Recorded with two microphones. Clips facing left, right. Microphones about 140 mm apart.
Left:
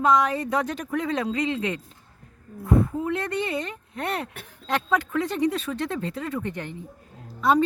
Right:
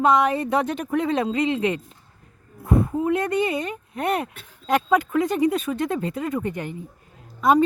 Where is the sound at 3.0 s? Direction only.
15° right (ahead or behind).